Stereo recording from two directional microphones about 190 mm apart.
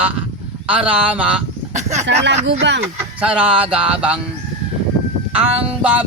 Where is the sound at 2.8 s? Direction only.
10° right (ahead or behind).